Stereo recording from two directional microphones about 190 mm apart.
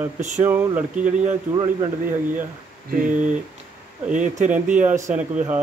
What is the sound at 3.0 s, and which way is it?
Speech, 40° right (ahead or behind).